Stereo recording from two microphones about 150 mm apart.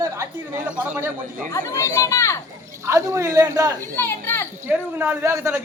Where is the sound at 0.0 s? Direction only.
20° right (ahead or behind).